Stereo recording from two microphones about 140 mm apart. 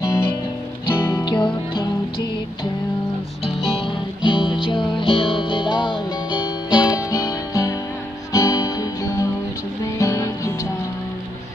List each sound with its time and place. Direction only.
0.0 s music: 20° left (ahead or behind)
3.4 s music: 40° left (ahead or behind); by 10.7 s 20° left (ahead or behind)